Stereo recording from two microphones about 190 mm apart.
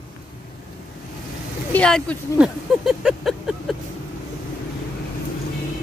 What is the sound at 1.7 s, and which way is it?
Speech, 5° left (ahead or behind).